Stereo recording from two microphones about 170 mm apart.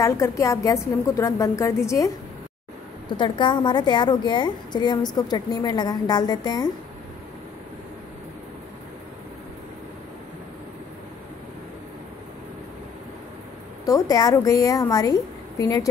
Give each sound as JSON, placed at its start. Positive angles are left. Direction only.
{"t": 0.0, "sound": "a woman's voice", "side_deg": 20}
{"t": 3.2, "sound": "a woman's voice", "side_deg": 25}
{"t": 13.8, "sound": "a woman's voice", "side_deg": 20}